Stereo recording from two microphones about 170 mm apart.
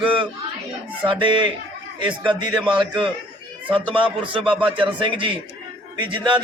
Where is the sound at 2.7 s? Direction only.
30° right (ahead or behind).